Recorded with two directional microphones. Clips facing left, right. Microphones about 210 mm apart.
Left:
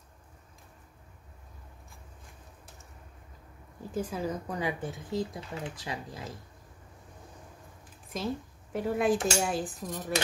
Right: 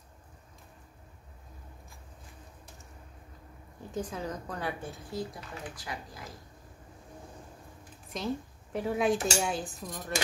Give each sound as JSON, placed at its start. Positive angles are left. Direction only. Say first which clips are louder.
{"t": 3.9, "sound": "speech", "louder": "left 3 dB", "side_deg": 5}
{"t": 5.5, "sound": "speech", "louder": "left 3 dB", "side_deg": 25}
{"t": 8.1, "sound": "cutlery", "louder": "even", "side_deg": 5}
{"t": 9.9, "sound": "speech", "louder": "left 3 dB", "side_deg": 10}